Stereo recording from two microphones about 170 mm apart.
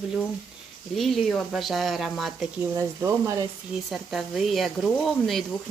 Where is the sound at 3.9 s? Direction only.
Centre (ahead or behind).